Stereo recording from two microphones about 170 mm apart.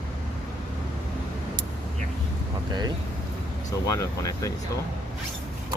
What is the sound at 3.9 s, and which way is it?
Speech, 20° left (ahead or behind).